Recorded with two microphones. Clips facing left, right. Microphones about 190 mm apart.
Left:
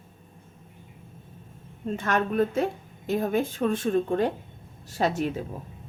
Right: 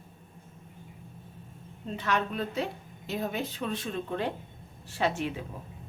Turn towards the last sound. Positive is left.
turn(degrees=40)  # may be behind; listen again after turning